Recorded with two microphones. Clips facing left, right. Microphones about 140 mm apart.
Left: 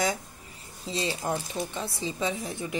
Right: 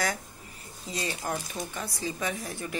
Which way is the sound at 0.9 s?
25° left (ahead or behind).